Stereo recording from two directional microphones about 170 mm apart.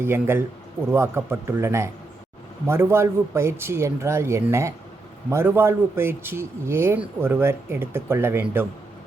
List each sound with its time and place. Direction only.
0.0 s a man's voice: 15° right (ahead or behind)